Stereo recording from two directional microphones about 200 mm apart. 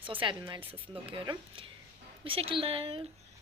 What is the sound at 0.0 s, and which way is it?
Speech, 25° right (ahead or behind).